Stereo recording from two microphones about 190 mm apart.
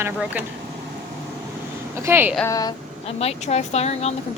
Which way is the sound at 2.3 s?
15° left (ahead or behind).